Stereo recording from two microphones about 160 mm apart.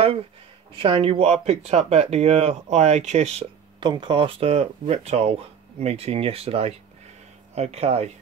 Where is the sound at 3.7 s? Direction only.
30° right (ahead or behind).